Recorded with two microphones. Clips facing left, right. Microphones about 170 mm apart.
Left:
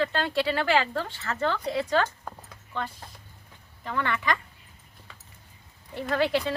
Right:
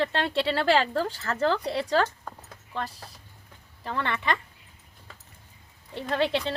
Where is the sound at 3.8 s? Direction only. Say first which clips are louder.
Left 1 dB; 30° right (ahead or behind).